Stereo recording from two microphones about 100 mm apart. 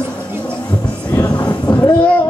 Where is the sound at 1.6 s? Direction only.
20° left (ahead or behind).